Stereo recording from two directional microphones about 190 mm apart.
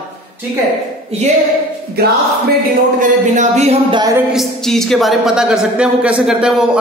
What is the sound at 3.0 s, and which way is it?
Speech, 40° right (ahead or behind).